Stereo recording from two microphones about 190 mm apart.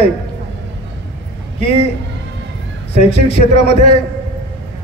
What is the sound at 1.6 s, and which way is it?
Speech, 30° left (ahead or behind).